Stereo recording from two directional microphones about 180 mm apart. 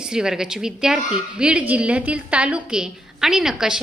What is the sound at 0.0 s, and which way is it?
A woman's voice, 5° right (ahead or behind).